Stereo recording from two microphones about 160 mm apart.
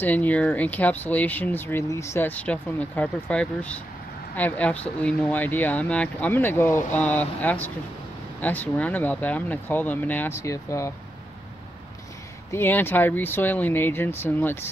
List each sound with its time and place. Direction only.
0.0 s speech: 10° left (ahead or behind)
12.4 s speech: 15° left (ahead or behind)